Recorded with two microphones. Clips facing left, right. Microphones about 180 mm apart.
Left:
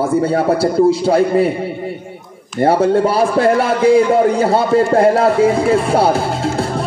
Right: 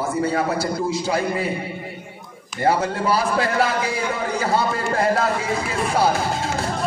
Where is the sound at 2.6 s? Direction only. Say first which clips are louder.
Left 8 dB; 30° left (ahead or behind).